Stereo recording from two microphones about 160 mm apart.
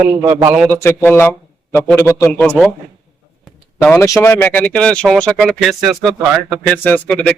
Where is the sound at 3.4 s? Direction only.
5° left (ahead or behind).